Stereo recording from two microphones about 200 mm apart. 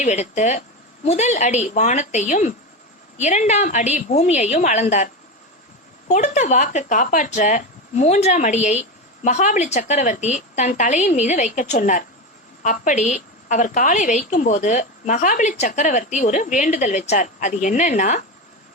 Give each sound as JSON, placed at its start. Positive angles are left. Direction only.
{"t": 0.0, "sound": "speech", "side_deg": 35}
{"t": 6.1, "sound": "speech", "side_deg": 35}